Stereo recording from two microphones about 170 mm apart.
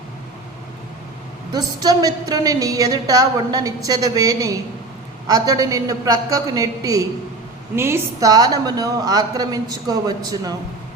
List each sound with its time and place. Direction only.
1.5 s a woman's voice: 25° right (ahead or behind)